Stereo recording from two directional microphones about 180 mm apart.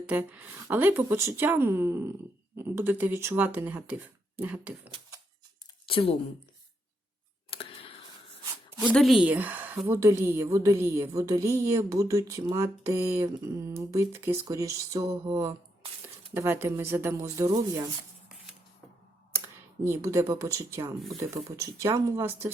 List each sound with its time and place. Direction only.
0.0 s a woman's voice: 10° right (ahead or behind)
5.9 s speech: 30° left (ahead or behind)
7.5 s clicking: 30° left (ahead or behind)
8.9 s a woman's voice: centre (ahead or behind); by 17.9 s 20° right (ahead or behind)
19.8 s a woman's voice: 15° right (ahead or behind)